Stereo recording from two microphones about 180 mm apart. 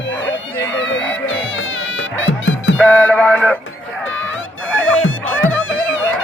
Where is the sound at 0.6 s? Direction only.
90° left.